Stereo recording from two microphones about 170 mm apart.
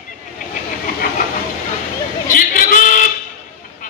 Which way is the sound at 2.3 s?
50° left (ahead or behind).